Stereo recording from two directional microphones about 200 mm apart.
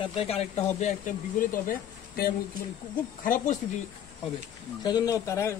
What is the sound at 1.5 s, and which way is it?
Speech, 45° left (ahead or behind).